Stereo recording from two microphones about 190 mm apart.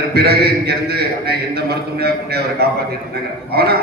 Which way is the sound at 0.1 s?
55° right (ahead or behind).